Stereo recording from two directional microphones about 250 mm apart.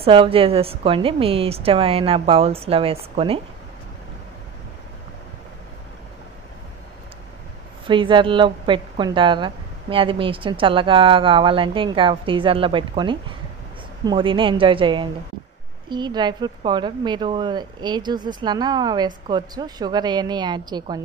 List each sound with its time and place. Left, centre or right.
0.0 s a woman's voice: right
7.8 s a woman's voice: centre